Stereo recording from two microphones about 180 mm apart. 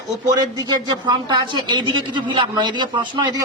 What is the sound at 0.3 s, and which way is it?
A man's voice, 20° right (ahead or behind).